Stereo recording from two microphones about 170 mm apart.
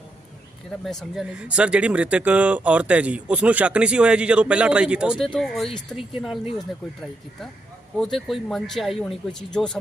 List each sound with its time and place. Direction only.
0.9 s speech: centre (ahead or behind)
7.9 s speech: centre (ahead or behind)